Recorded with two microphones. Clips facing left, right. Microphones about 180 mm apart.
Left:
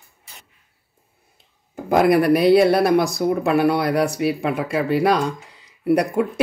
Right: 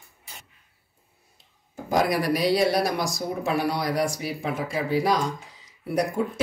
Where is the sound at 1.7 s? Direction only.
60° left (ahead or behind).